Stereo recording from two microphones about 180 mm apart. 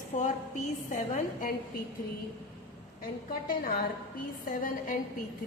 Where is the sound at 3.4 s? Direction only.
50° left (ahead or behind).